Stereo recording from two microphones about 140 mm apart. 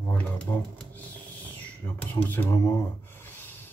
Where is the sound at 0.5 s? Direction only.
15° left (ahead or behind).